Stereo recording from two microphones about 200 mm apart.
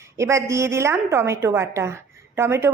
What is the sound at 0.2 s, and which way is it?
A woman's voice, 15° right (ahead or behind).